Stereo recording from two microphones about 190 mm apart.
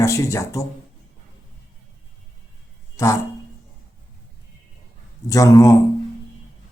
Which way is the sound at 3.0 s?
15° left (ahead or behind).